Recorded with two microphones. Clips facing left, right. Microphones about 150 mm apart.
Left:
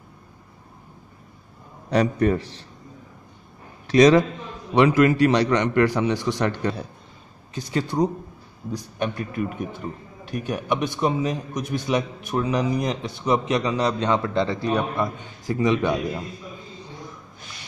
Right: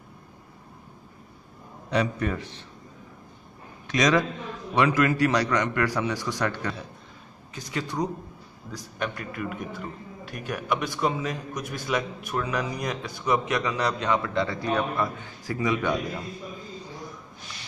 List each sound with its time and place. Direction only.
1.9 s a man's voice: 45° left (ahead or behind)
3.8 s a man's voice: 30° left (ahead or behind)